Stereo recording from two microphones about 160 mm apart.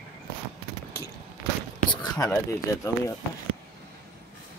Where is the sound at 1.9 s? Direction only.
30° left (ahead or behind).